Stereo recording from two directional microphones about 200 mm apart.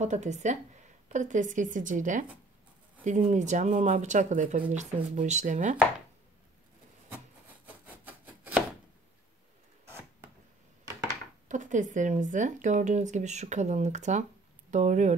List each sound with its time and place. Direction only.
0.0 s speech: 35° right (ahead or behind)
7.6 s a sound: 10° right (ahead or behind)
11.4 s speech: 40° right (ahead or behind)